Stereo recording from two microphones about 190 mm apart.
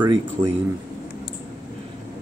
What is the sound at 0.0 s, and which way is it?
Speech, 25° right (ahead or behind).